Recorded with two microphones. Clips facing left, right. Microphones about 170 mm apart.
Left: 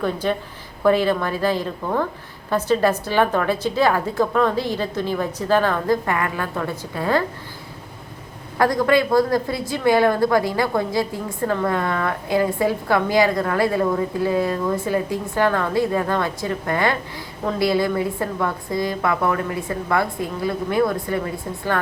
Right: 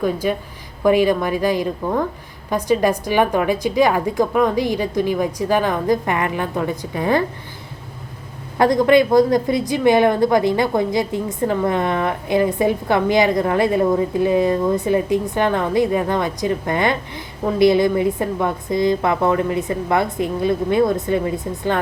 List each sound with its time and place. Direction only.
0.0 s a woman's voice: 10° right (ahead or behind)
8.5 s a woman's voice: 20° right (ahead or behind)